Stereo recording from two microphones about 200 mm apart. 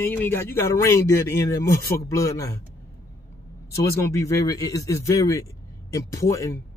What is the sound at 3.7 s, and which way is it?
Speech, 15° left (ahead or behind).